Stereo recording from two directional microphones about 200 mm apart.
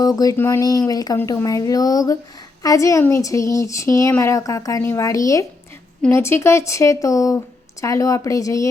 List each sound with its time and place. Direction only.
0.0 s speech: 20° left (ahead or behind)